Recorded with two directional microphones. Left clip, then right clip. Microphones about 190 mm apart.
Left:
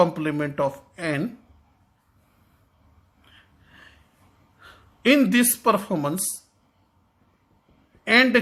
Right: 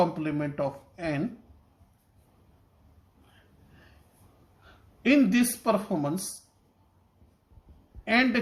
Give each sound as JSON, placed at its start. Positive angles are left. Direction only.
{"t": 0.0, "sound": "speech", "side_deg": 35}
{"t": 4.6, "sound": "speech", "side_deg": 35}
{"t": 8.0, "sound": "speech", "side_deg": 30}